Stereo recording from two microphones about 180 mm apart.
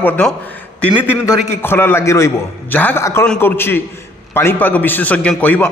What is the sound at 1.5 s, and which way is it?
A man's voice, 10° left (ahead or behind).